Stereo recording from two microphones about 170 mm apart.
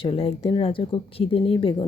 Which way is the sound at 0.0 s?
35° left (ahead or behind).